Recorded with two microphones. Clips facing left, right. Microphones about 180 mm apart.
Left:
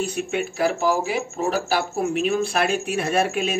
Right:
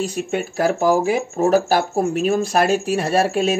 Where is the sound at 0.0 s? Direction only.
40° right (ahead or behind).